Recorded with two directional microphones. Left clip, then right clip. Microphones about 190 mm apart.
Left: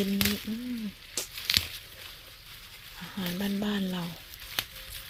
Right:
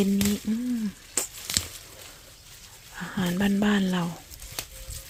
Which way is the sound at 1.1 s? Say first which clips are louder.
Left 3 dB; 30° right (ahead or behind).